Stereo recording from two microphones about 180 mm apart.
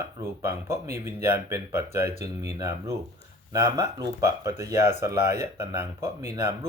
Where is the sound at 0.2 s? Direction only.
15° right (ahead or behind).